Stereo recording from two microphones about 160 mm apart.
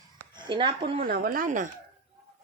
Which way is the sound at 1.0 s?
70° right (ahead or behind).